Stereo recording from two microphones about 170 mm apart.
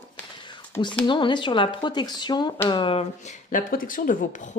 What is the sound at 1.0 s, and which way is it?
Speech, 30° left (ahead or behind).